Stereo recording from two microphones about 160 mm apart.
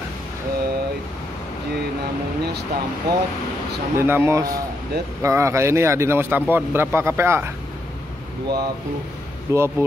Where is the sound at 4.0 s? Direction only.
15° right (ahead or behind).